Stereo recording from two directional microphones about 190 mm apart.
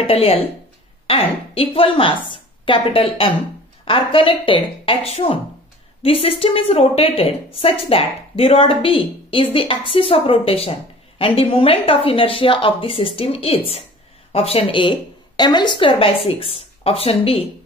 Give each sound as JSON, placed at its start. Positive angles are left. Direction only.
{"t": 0.0, "sound": "a woman's voice", "side_deg": 30}